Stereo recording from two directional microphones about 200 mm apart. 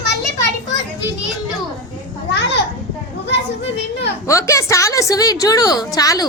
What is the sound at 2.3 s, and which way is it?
Speech, 60° left (ahead or behind).